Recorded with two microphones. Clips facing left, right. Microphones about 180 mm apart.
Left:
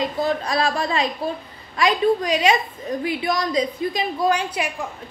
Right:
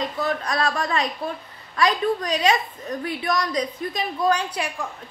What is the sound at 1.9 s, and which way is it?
A woman's voice, 10° left (ahead or behind).